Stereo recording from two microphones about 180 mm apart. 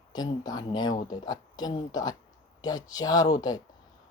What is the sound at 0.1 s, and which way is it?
Speech, 20° left (ahead or behind).